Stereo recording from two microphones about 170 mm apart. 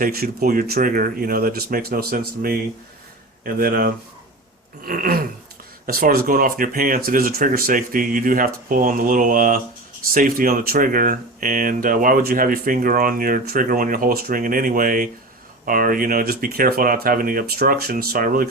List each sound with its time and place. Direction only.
0.0 s speech: 60° right (ahead or behind)